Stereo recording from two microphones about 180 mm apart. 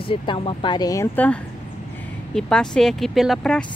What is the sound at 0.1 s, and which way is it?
Speech, 30° left (ahead or behind).